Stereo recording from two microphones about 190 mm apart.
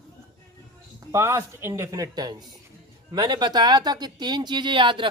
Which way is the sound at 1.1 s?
15° right (ahead or behind).